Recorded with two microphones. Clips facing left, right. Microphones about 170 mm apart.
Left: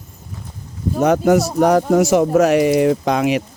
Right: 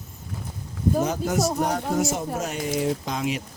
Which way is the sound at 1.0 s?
70° left (ahead or behind).